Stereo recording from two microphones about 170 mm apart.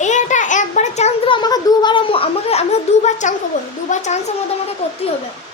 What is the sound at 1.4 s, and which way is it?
A child's voice, 25° left (ahead or behind).